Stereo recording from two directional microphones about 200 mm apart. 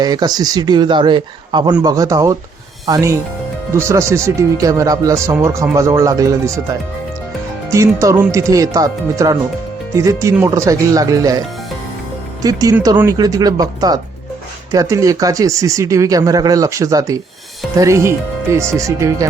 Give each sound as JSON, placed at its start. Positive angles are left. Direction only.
{"t": 0.0, "sound": "a man's voice", "side_deg": -20}